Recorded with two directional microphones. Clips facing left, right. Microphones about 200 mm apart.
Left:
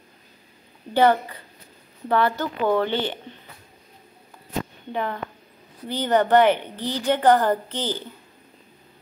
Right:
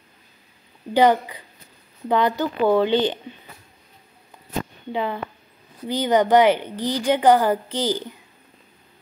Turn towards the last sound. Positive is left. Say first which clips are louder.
# right 3 dB
turn(degrees=-10)  # may be behind; listen again after turning